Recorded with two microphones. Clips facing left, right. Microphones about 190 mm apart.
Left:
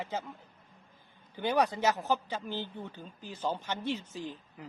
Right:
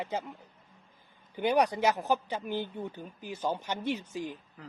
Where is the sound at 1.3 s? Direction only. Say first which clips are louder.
Right 2 dB; 15° right (ahead or behind).